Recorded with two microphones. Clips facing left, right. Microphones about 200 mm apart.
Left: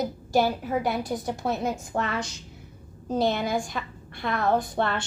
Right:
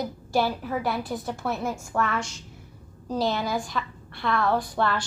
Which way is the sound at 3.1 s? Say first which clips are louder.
Left 1 dB; 50° left (ahead or behind).